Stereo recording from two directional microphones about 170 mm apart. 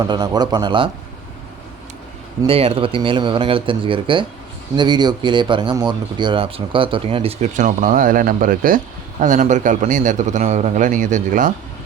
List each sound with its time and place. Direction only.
0.0 s speech: 25° right (ahead or behind)
2.5 s a man's voice: 35° right (ahead or behind)